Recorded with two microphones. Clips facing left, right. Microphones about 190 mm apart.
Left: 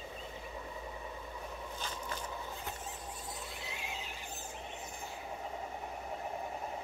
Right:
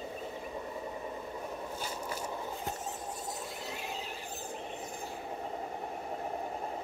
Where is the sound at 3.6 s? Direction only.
40° right (ahead or behind).